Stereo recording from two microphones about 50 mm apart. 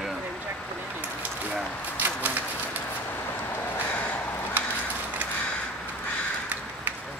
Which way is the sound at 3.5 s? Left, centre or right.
Left.